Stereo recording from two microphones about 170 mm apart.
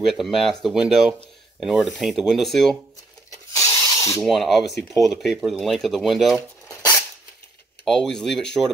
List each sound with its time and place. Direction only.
0.0 s speech: centre (ahead or behind)
3.5 s rub: 15° left (ahead or behind)
4.2 s speech: centre (ahead or behind)
7.8 s speech: centre (ahead or behind)